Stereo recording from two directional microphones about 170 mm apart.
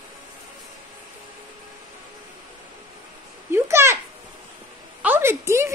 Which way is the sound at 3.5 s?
15° right (ahead or behind).